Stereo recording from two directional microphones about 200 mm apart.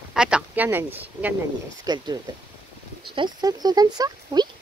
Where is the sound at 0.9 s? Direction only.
10° right (ahead or behind).